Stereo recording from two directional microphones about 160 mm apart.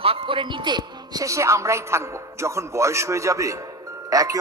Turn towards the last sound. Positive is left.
turn(degrees=-20)  # may be behind; listen again after turning